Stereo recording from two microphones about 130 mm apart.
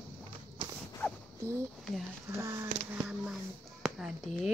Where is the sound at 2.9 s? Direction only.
10° right (ahead or behind).